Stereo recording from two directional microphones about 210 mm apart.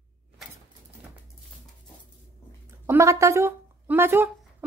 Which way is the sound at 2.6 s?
10° right (ahead or behind).